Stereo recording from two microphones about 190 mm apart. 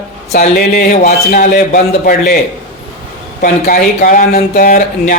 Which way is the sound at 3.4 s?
50° left (ahead or behind).